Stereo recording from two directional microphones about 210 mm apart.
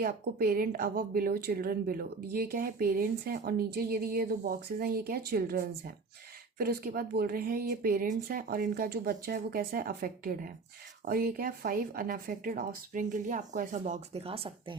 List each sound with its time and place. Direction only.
0.0 s a woman's voice: 45° right (ahead or behind); by 14.8 s 25° right (ahead or behind)